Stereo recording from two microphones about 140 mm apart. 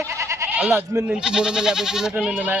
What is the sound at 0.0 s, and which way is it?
Goat, 20° right (ahead or behind).